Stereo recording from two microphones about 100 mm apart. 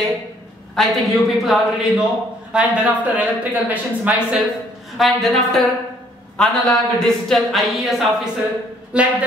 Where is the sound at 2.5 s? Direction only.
10° right (ahead or behind).